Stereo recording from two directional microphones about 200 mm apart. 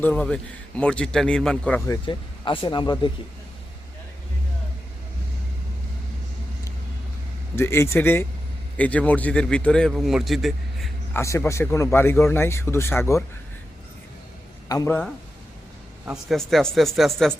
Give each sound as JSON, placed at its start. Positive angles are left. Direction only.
{"t": 0.0, "sound": "a man's voice", "side_deg": 5}
{"t": 1.9, "sound": "speech", "side_deg": 25}
{"t": 7.5, "sound": "a man's voice", "side_deg": 15}
{"t": 11.1, "sound": "a man's voice", "side_deg": 15}
{"t": 14.7, "sound": "speech", "side_deg": 15}
{"t": 16.3, "sound": "a man's voice", "side_deg": 0}